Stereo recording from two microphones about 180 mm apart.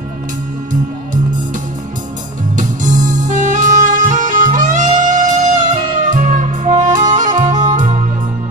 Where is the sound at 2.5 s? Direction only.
45° right (ahead or behind).